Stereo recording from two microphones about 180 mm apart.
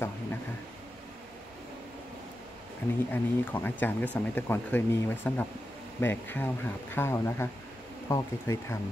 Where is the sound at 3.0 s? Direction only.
10° left (ahead or behind).